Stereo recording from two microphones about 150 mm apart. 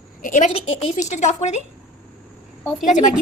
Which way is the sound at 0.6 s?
45° left (ahead or behind).